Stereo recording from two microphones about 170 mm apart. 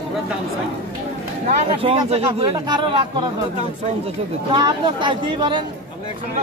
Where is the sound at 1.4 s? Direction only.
35° right (ahead or behind).